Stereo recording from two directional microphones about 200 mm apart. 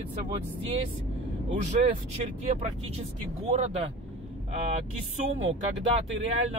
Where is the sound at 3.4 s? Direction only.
30° right (ahead or behind).